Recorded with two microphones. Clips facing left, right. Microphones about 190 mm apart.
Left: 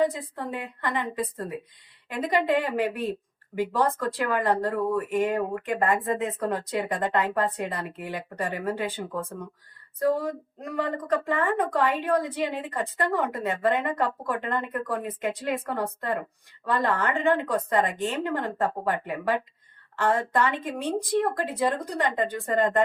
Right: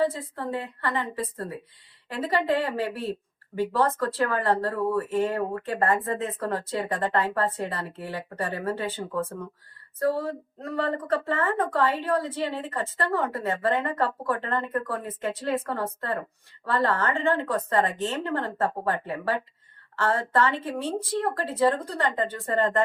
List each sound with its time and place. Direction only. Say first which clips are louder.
0.1 s speech: right 2 dB; 15° left (ahead or behind)
10.0 s speech: left 1 dB; 15° left (ahead or behind)